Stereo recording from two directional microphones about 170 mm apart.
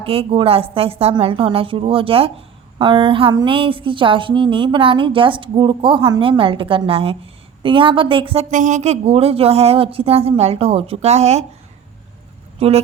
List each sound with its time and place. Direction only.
0.0 s a woman's voice: 35° right (ahead or behind)
8.4 s a woman's voice: 45° right (ahead or behind)
12.5 s speech: 35° right (ahead or behind)